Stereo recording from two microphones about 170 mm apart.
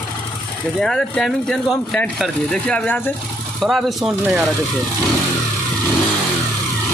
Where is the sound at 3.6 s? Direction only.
Centre (ahead or behind).